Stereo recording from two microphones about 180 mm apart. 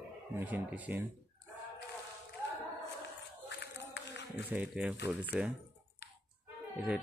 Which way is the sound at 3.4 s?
75° left (ahead or behind).